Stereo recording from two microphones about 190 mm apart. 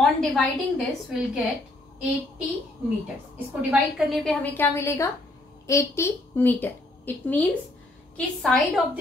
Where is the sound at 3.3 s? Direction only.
5° right (ahead or behind).